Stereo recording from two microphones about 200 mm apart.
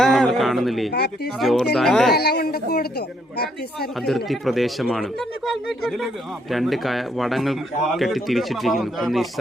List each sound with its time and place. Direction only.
0.0 s a sound: centre (ahead or behind)
0.9 s speech: 55° left (ahead or behind)
1.4 s speech: centre (ahead or behind)
2.1 s speech: 55° left (ahead or behind)
4.0 s speech: centre (ahead or behind)
6.5 s speech: centre (ahead or behind)